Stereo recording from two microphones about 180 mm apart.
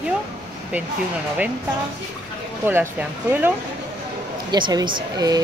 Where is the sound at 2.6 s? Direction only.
10° right (ahead or behind).